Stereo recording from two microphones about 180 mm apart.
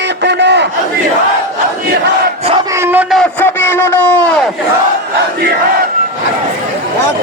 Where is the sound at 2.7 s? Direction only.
10° right (ahead or behind).